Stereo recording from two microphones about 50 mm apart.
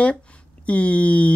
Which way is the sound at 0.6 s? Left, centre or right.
Left.